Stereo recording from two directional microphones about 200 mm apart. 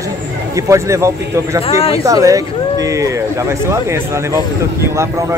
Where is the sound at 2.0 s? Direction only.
15° right (ahead or behind).